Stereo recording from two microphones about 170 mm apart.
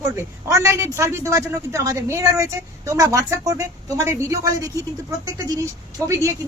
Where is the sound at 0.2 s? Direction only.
15° right (ahead or behind).